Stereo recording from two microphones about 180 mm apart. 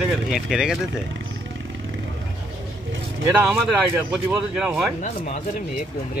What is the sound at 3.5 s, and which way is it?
Speech, 10° right (ahead or behind).